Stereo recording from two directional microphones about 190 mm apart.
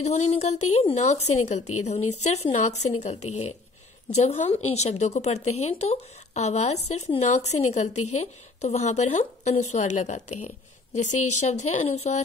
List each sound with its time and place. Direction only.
0.0 s a woman's voice: 35° left (ahead or behind)